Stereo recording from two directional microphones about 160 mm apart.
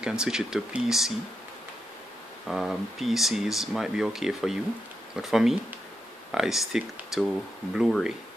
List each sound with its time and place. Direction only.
0.0 s speech: 5° right (ahead or behind)
2.4 s speech: centre (ahead or behind)